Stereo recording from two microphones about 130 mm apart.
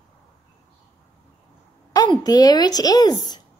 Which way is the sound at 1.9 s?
30° left (ahead or behind).